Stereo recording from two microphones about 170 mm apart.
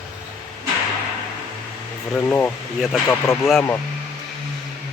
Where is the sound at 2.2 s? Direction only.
10° left (ahead or behind).